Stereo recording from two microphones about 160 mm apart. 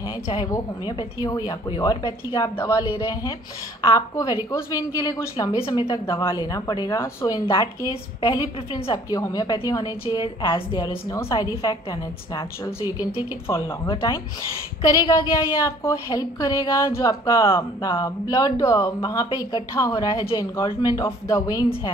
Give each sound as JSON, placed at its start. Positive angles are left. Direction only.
{"t": 0.3, "sound": "a woman's voice", "side_deg": 25}
{"t": 3.9, "sound": "a woman's voice", "side_deg": 20}
{"t": 7.5, "sound": "a woman's voice", "side_deg": 30}
{"t": 9.1, "sound": "a woman's voice", "side_deg": 25}